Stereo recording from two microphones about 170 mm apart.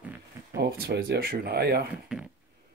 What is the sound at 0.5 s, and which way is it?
Speech, 70° right (ahead or behind).